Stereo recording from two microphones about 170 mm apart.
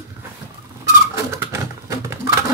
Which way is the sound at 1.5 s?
20° right (ahead or behind).